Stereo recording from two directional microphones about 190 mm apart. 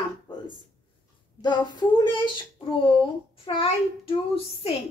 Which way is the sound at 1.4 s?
25° left (ahead or behind).